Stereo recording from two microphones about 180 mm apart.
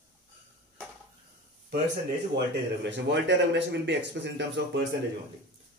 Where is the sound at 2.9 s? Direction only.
80° right.